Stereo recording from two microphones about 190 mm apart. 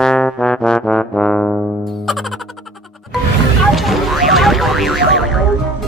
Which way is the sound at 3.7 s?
Centre (ahead or behind).